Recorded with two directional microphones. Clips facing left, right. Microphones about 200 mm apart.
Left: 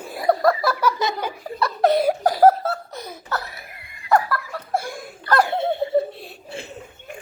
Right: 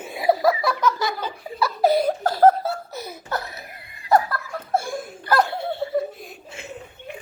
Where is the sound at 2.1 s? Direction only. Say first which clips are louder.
Left 3 dB; 10° left (ahead or behind).